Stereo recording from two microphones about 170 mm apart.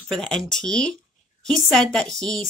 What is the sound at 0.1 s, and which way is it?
Speech, 5° left (ahead or behind).